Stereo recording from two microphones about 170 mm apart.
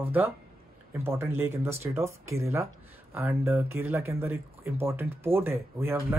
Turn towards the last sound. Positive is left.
turn(degrees=-10)  # may be behind; listen again after turning